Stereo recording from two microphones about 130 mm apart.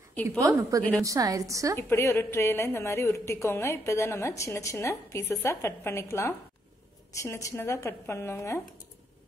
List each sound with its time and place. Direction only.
0.1 s a woman's voice: 10° left (ahead or behind)
0.4 s a woman's voice: 25° right (ahead or behind)
1.8 s a woman's voice: 20° left (ahead or behind)